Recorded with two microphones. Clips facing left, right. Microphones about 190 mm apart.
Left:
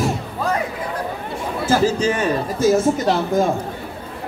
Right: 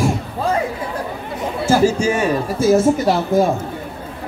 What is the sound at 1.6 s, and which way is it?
Speech, 10° right (ahead or behind).